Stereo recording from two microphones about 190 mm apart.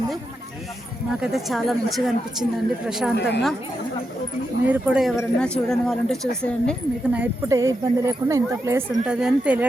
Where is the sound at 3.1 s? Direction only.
60° left (ahead or behind).